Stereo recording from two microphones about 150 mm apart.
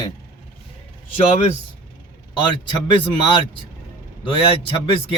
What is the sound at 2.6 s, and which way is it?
A man's voice, 30° left (ahead or behind).